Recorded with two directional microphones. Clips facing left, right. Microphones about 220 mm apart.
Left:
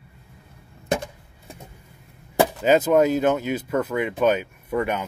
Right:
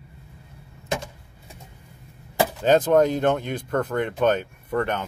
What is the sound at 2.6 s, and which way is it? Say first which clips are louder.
Speech: right 1 dB; 10° left (ahead or behind).